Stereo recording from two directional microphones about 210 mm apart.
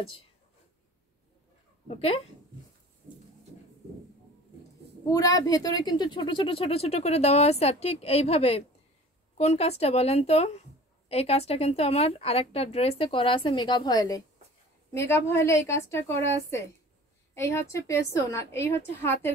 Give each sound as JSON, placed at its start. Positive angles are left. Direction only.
{"t": 1.9, "sound": "speech", "side_deg": 30}
{"t": 5.1, "sound": "a woman's voice", "side_deg": 15}
{"t": 17.3, "sound": "a woman's voice", "side_deg": 10}